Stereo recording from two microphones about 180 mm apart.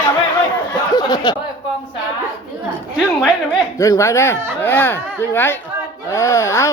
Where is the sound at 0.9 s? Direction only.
20° left (ahead or behind).